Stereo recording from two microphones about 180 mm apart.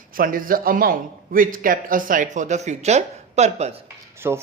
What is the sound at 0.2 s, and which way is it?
A man's voice, 50° right (ahead or behind).